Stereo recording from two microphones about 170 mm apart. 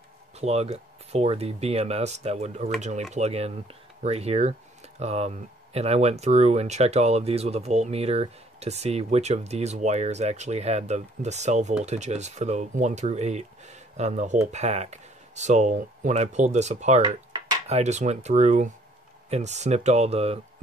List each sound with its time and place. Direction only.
0.4 s speech: 40° right (ahead or behind)